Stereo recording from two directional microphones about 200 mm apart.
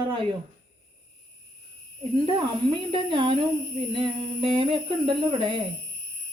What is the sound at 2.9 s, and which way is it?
Speech, 25° right (ahead or behind).